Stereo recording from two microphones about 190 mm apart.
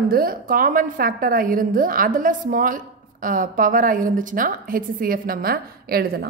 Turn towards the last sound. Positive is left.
turn(degrees=-55)  # may be behind; listen again after turning